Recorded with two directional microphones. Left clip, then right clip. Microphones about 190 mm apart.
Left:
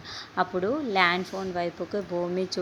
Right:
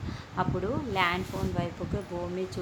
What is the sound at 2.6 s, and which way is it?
Speech, 30° left (ahead or behind).